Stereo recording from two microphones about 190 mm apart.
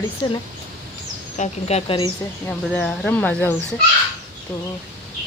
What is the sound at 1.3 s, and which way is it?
Speech, 35° left (ahead or behind).